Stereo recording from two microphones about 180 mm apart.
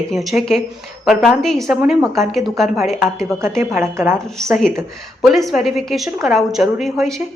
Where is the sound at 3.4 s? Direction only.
15° right (ahead or behind).